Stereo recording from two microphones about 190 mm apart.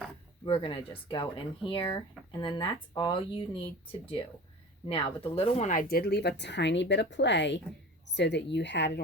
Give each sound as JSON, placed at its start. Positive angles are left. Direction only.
{"t": 0.4, "sound": "speech", "side_deg": 30}
{"t": 4.9, "sound": "speech", "side_deg": 30}